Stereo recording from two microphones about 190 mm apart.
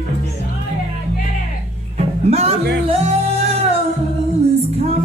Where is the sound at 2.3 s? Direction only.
35° right (ahead or behind).